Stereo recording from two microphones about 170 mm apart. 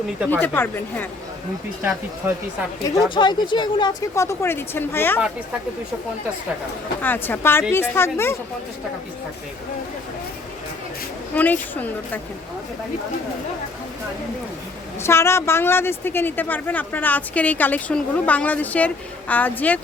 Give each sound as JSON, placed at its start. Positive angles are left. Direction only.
{"t": 0.3, "sound": "speech", "side_deg": 10}
{"t": 2.9, "sound": "speech", "side_deg": 25}
{"t": 7.0, "sound": "speech", "side_deg": 10}
{"t": 11.3, "sound": "speech", "side_deg": 10}
{"t": 15.0, "sound": "speech", "side_deg": 15}